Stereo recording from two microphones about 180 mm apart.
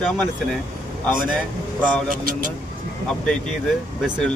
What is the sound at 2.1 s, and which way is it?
Speech, 50° right (ahead or behind).